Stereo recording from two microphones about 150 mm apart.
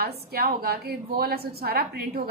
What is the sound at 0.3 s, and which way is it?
A woman's voice, 90° right.